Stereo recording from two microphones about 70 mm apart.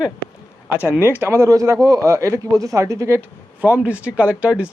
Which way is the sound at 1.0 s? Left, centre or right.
Right.